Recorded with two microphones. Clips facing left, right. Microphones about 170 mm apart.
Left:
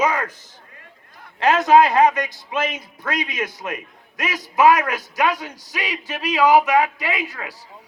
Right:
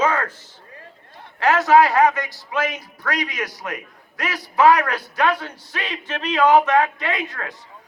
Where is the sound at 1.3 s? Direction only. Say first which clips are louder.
Left 1 dB; 20° left (ahead or behind).